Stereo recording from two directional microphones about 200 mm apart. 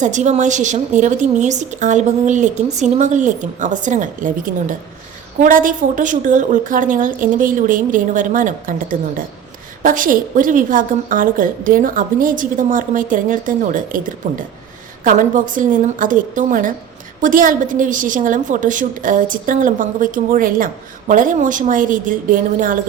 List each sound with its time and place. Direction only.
0.0 s a woman's voice: 35° right (ahead or behind)